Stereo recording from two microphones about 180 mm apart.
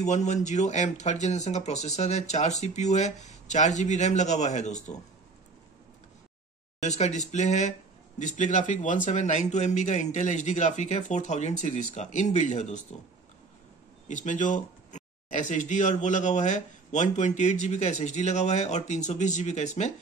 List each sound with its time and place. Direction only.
0.0 s speech: 40° left (ahead or behind)
6.8 s speech: 40° left (ahead or behind)
14.0 s speech: 45° left (ahead or behind)